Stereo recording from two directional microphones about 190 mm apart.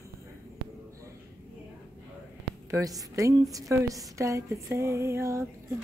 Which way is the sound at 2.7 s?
20° right (ahead or behind).